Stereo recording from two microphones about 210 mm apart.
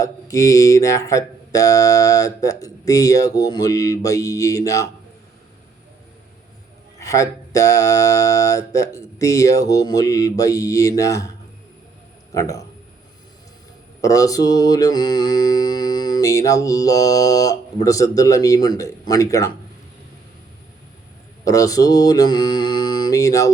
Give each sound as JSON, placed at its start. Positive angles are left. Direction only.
{"t": 0.0, "sound": "mantra", "side_deg": 15}
{"t": 7.0, "sound": "mantra", "side_deg": 15}
{"t": 14.0, "sound": "mantra", "side_deg": 15}
{"t": 21.4, "sound": "mantra", "side_deg": 15}